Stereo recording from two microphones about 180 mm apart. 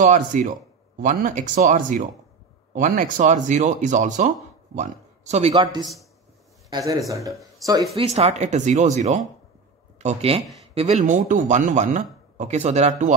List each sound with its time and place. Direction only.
0.0 s speech: 45° right (ahead or behind)
5.5 s a man's voice: 25° right (ahead or behind)
7.9 s speech: 35° right (ahead or behind)